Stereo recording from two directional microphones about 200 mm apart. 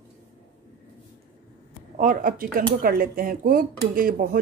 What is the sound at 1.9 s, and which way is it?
Speech, 40° right (ahead or behind).